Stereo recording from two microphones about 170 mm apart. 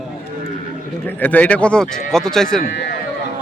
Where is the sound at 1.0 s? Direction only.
10° left (ahead or behind).